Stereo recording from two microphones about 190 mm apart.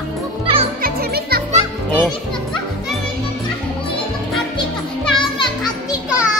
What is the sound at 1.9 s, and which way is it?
Speech, 5° left (ahead or behind).